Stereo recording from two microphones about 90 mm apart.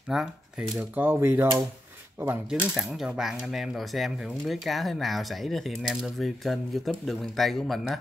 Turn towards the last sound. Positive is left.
turn(degrees=0)  # may be behind; listen again after turning